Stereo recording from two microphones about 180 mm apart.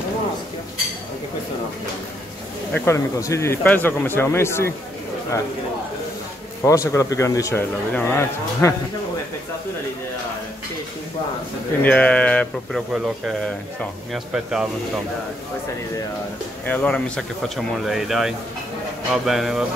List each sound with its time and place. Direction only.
2.7 s a man's voice: 15° left (ahead or behind)
6.6 s a man's voice: 15° left (ahead or behind)
11.8 s a man's voice: 10° left (ahead or behind)
16.6 s speech: 5° left (ahead or behind)